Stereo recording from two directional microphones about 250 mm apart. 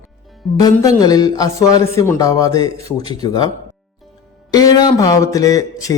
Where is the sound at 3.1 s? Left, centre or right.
Centre.